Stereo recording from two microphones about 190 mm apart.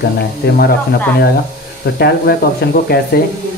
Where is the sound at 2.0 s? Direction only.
55° left (ahead or behind).